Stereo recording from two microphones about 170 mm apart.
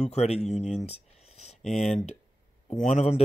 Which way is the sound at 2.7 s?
40° left (ahead or behind).